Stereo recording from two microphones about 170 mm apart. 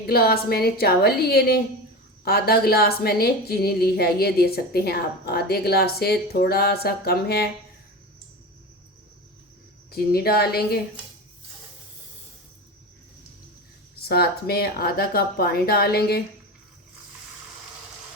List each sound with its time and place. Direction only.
0.0 s a woman's voice: 65° left (ahead or behind)
9.9 s a woman's voice: 65° left (ahead or behind)
14.1 s a woman's voice: 65° left (ahead or behind)